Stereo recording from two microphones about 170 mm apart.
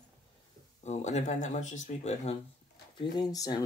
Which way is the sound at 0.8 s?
40° left (ahead or behind).